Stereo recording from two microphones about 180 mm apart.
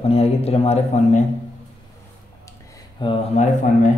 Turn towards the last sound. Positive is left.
turn(degrees=40)  # may be behind; listen again after turning